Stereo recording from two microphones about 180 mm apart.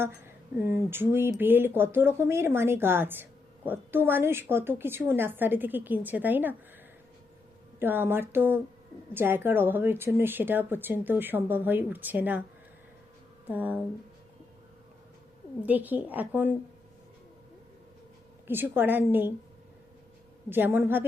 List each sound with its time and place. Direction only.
0.6 s speech: 10° right (ahead or behind)
7.8 s speech: 10° right (ahead or behind)
13.5 s speech: 10° right (ahead or behind)
15.6 s speech: 10° right (ahead or behind)
18.4 s speech: 10° right (ahead or behind)
20.5 s speech: 10° right (ahead or behind)